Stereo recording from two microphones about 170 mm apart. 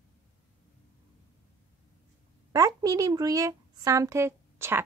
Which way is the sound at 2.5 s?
20° right (ahead or behind).